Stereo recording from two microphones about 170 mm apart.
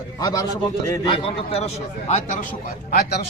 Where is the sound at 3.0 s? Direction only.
70° left (ahead or behind).